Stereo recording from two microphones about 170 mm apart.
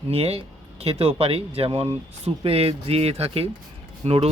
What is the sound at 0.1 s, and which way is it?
Speech, 35° right (ahead or behind).